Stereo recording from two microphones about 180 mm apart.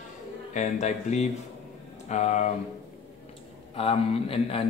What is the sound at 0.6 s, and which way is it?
A man's voice, 40° left (ahead or behind).